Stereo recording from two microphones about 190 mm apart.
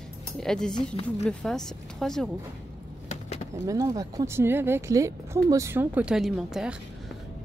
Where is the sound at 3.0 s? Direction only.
35° left (ahead or behind).